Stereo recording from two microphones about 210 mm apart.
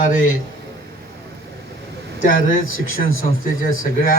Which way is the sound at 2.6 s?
70° left (ahead or behind).